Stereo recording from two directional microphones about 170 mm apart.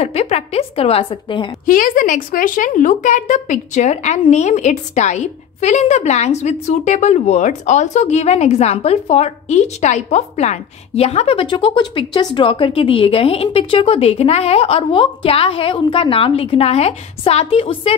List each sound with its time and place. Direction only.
0.0 s a woman's voice: 40° left (ahead or behind)
1.7 s a woman's voice: 50° left (ahead or behind); by 17.9 s 35° left (ahead or behind)